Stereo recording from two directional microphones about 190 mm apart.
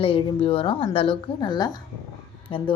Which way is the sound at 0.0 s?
30° left (ahead or behind).